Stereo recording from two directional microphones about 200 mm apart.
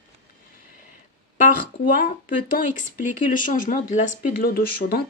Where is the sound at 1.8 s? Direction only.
45° left (ahead or behind).